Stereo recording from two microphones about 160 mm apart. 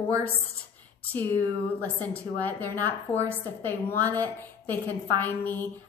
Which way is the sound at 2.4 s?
10° left (ahead or behind).